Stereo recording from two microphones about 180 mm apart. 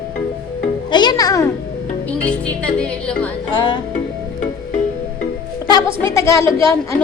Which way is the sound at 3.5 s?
25° left (ahead or behind).